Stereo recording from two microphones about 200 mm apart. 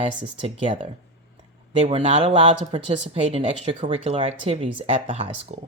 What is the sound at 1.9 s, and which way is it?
Speech, 25° right (ahead or behind).